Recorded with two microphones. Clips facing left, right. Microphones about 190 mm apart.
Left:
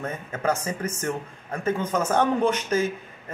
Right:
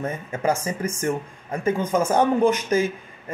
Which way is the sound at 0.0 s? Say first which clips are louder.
Right 3 dB; 10° right (ahead or behind).